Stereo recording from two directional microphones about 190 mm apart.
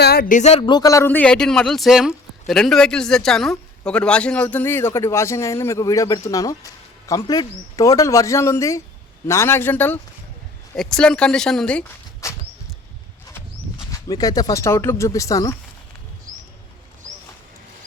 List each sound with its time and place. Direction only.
0.0 s a man's voice: 55° left (ahead or behind); by 11.9 s 5° left (ahead or behind)
12.2 s a man's voice: 15° left (ahead or behind)
13.9 s a man's voice: 20° left (ahead or behind)